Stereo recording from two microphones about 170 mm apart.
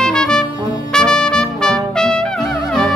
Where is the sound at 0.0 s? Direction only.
5° left (ahead or behind).